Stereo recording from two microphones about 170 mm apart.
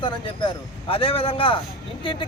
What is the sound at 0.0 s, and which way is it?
Speech, 30° left (ahead or behind).